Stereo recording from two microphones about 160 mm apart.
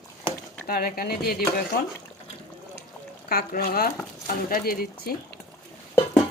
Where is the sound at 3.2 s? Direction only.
70° left (ahead or behind).